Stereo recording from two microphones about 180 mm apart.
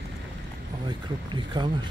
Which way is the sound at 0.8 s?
25° right (ahead or behind).